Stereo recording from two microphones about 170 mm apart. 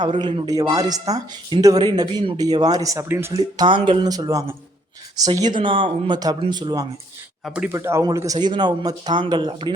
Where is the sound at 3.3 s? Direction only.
25° right (ahead or behind).